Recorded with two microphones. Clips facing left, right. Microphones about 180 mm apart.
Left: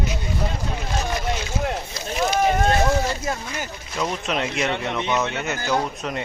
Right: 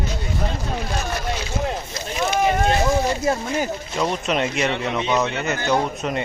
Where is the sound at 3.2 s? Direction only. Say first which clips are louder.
Right 7 dB; 35° right (ahead or behind).